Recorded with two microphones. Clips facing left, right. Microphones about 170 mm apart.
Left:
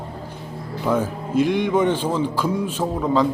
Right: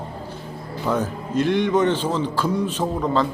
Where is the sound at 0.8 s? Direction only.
10° left (ahead or behind).